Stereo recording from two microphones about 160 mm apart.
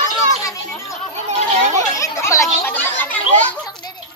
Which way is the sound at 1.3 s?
40° right (ahead or behind).